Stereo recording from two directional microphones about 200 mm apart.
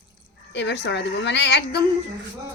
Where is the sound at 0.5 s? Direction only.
60° left (ahead or behind).